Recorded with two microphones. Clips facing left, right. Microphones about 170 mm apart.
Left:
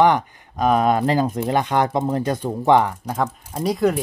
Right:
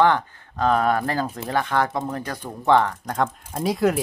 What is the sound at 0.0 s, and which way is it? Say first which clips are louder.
Speech: left 2 dB; 15° left (ahead or behind).